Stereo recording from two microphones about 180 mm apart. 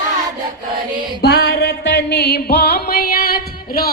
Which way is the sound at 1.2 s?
65° left (ahead or behind).